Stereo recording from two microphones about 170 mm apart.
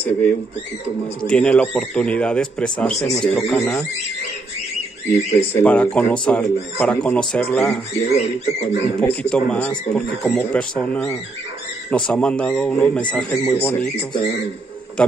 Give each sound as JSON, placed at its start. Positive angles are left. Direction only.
{"t": 0.0, "sound": "speech", "side_deg": 10}
{"t": 5.1, "sound": "speech", "side_deg": 40}
{"t": 5.6, "sound": "speech", "side_deg": 10}
{"t": 8.1, "sound": "speech", "side_deg": 40}
{"t": 9.0, "sound": "speech", "side_deg": 10}
{"t": 15.0, "sound": "speech", "side_deg": 5}